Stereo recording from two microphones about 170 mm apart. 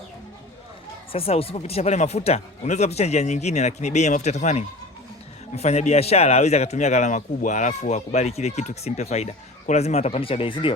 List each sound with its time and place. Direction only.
1.1 s a man's voice: 35° left (ahead or behind)